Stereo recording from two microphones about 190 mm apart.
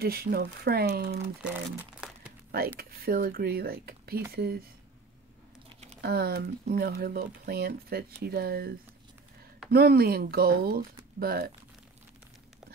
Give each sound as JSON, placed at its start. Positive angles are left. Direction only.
{"t": 0.0, "sound": "speech", "side_deg": -55}
{"t": 1.4, "sound": "crumpling", "side_deg": -5}
{"t": 2.8, "sound": "speech", "side_deg": -55}
{"t": 5.9, "sound": "speech", "side_deg": -55}